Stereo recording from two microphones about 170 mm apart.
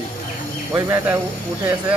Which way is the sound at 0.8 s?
15° right (ahead or behind).